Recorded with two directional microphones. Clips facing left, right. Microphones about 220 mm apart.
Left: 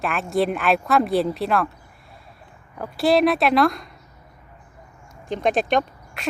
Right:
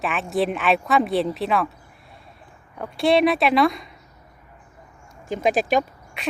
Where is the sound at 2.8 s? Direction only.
Centre (ahead or behind).